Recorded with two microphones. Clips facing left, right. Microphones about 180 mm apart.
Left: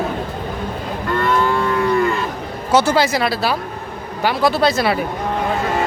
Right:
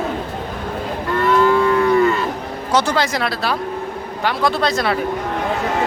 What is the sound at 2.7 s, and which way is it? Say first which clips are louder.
Speech: left 3 dB; 5° left (ahead or behind).